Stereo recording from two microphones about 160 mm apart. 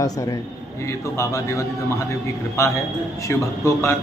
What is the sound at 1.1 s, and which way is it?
A man's voice, 20° left (ahead or behind).